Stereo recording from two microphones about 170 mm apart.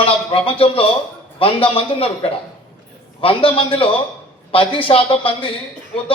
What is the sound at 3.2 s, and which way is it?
A man's voice, 30° left (ahead or behind).